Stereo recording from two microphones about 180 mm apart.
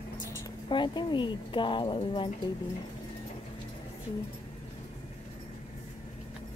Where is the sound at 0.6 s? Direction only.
25° left (ahead or behind).